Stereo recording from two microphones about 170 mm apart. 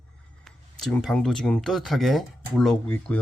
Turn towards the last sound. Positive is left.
turn(degrees=10)  # may be behind; listen again after turning